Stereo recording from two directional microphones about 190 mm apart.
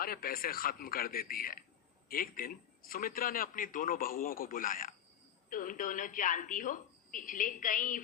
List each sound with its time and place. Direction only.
0.0 s a man's voice: 50° left (ahead or behind)